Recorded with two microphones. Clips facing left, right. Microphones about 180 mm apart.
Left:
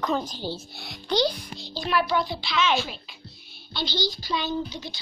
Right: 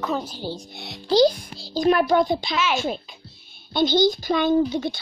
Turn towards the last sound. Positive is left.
turn(degrees=-55)  # may be behind; listen again after turning